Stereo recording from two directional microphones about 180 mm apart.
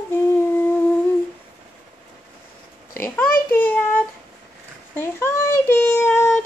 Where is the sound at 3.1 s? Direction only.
10° left (ahead or behind).